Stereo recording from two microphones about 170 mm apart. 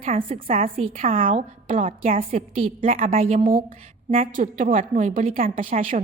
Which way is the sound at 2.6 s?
50° right (ahead or behind).